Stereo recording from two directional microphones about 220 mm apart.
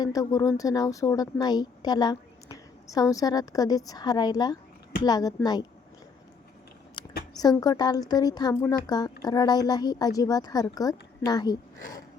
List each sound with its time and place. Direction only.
0.0 s speech: 15° left (ahead or behind)
7.0 s a sound: 20° left (ahead or behind)
7.3 s speech: 15° left (ahead or behind)